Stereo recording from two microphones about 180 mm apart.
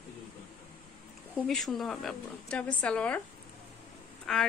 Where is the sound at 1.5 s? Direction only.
5° left (ahead or behind).